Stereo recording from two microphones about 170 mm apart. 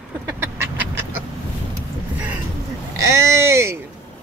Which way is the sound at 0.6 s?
15° right (ahead or behind).